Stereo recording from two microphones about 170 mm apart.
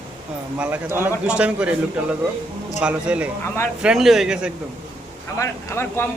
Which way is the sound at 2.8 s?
5° right (ahead or behind).